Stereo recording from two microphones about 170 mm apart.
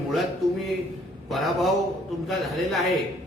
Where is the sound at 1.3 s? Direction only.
Centre (ahead or behind).